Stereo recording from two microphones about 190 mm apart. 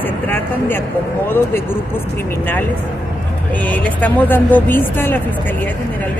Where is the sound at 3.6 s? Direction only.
10° left (ahead or behind).